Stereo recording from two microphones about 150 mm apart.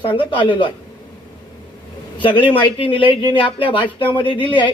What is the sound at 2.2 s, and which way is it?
Speech, 35° left (ahead or behind).